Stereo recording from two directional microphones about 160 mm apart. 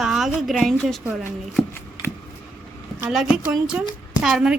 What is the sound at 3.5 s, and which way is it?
A woman's voice, 5° right (ahead or behind).